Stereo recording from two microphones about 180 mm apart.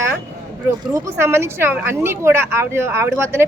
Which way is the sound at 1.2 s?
15° right (ahead or behind).